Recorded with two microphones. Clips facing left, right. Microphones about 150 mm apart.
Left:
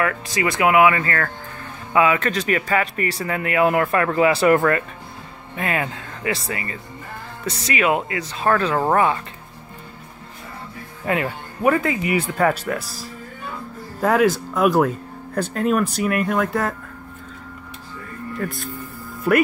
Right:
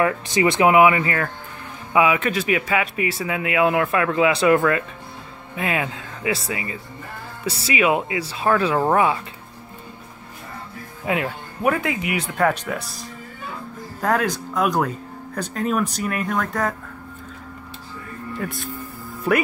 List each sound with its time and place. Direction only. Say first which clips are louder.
0.0 s speech: right 3 dB; 25° right (ahead or behind)
11.1 s speech: left 1 dB; centre (ahead or behind)
18.4 s speech: left 2 dB; centre (ahead or behind)